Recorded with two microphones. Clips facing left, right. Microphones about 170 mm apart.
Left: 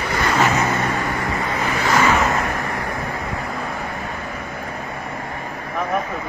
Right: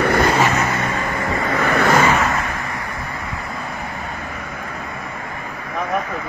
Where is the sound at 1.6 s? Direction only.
60° right (ahead or behind).